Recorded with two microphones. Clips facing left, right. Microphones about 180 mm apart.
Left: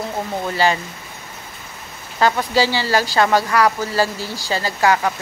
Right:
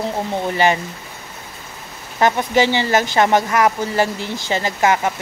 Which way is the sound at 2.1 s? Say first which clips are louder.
Right 1 dB; 20° right (ahead or behind).